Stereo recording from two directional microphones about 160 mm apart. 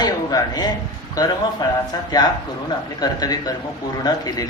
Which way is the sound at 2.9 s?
25° left (ahead or behind).